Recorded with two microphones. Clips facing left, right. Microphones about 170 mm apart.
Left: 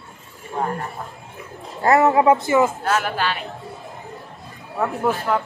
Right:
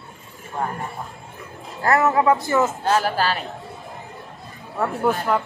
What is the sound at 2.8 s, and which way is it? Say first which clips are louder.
Speech: right 2 dB; 30° right (ahead or behind).